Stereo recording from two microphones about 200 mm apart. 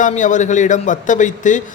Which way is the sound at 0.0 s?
40° left (ahead or behind).